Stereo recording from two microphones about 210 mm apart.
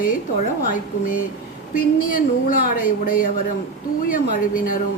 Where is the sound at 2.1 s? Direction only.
40° left (ahead or behind).